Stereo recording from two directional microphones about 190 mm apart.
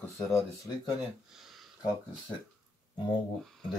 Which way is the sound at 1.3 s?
Centre (ahead or behind).